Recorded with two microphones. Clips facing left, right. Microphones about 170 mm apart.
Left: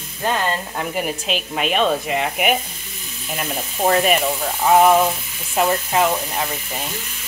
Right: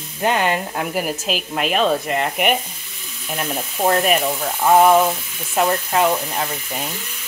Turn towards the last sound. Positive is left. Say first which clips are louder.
# even
turn(degrees=0)  # may be behind; listen again after turning